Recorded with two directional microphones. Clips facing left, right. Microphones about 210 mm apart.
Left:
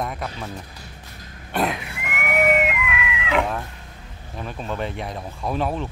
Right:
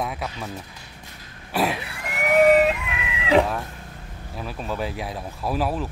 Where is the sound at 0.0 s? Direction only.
5° right (ahead or behind).